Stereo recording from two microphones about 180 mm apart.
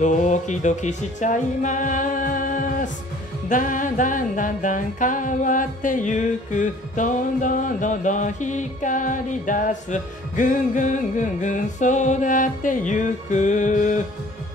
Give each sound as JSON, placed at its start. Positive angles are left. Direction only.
{"t": 0.0, "sound": "music", "side_deg": 40}